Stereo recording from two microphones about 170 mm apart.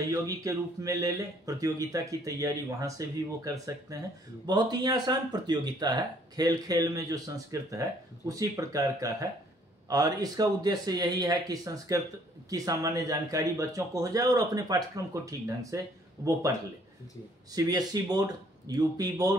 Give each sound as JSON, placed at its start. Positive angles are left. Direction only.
{"t": 0.1, "sound": "speech", "side_deg": -20}
{"t": 17.6, "sound": "speech", "side_deg": -20}